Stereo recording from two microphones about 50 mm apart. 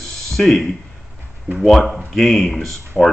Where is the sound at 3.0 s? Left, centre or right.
Centre.